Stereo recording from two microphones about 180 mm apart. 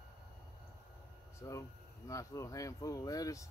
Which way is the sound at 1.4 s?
15° left (ahead or behind).